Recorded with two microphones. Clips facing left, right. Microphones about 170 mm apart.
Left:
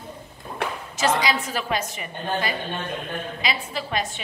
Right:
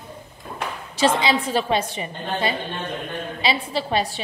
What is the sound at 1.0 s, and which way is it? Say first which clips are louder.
A woman's voice: right 3 dB; 30° right (ahead or behind).